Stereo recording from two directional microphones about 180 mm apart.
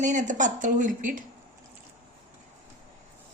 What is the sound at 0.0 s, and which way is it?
Speech, 45° right (ahead or behind).